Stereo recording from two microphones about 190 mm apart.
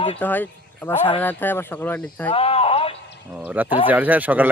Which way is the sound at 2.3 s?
30° left (ahead or behind).